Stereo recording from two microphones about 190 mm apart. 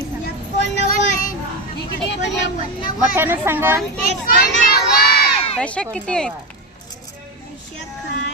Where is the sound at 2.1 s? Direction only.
65° left (ahead or behind).